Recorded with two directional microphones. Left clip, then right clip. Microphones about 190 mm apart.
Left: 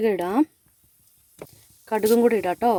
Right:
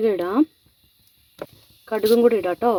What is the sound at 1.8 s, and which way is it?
Speech, 45° left (ahead or behind).